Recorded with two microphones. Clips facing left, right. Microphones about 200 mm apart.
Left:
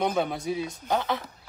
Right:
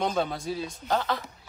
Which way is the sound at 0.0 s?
15° left (ahead or behind).